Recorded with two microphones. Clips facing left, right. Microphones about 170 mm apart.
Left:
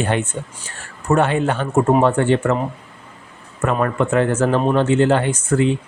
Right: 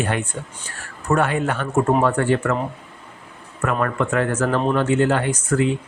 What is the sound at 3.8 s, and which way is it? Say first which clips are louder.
Speech: left 4 dB; 25° left (ahead or behind).